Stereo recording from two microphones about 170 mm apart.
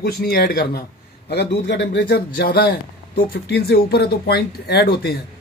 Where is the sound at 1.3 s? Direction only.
85° left.